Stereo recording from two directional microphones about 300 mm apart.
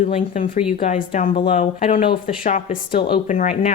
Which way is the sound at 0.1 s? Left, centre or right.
Left.